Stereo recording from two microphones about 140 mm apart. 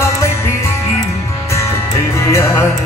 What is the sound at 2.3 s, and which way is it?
Music, 20° left (ahead or behind).